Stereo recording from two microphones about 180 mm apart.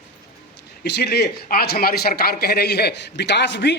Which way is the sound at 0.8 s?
65° left (ahead or behind).